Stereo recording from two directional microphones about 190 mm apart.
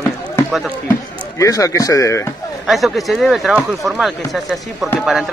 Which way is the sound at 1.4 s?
15° left (ahead or behind).